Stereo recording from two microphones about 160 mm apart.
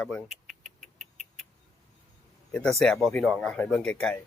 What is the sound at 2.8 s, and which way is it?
Speech, centre (ahead or behind).